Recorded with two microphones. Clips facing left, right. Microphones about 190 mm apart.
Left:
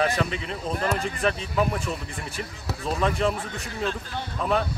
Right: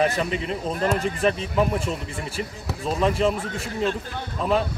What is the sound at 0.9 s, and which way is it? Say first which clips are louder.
Speech: right 4 dB; 30° right (ahead or behind).